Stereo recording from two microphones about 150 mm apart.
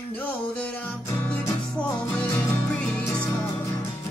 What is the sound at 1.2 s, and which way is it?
Music, 10° left (ahead or behind).